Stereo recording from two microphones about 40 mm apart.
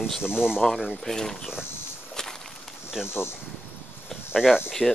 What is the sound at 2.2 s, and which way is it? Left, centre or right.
Walk, centre.